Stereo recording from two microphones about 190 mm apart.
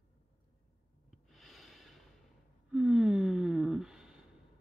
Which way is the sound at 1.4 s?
Centre (ahead or behind).